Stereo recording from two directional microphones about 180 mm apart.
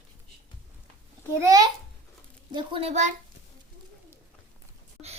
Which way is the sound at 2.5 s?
25° right (ahead or behind).